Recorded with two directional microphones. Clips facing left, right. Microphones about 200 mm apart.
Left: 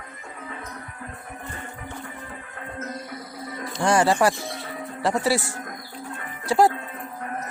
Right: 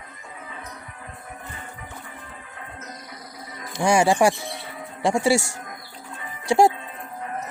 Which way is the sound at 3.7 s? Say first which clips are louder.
Right 1 dB; 10° right (ahead or behind).